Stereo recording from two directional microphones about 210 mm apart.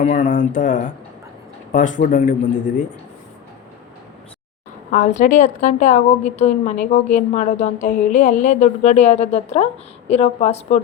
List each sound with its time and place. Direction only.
0.0 s a woman's voice: 35° left (ahead or behind)
4.9 s a woman's voice: 35° left (ahead or behind)